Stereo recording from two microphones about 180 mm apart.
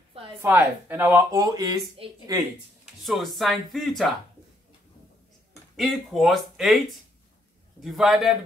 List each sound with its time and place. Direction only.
0.4 s speech: 15° right (ahead or behind)
2.8 s speech: centre (ahead or behind)
5.8 s speech: centre (ahead or behind)
7.8 s speech: centre (ahead or behind)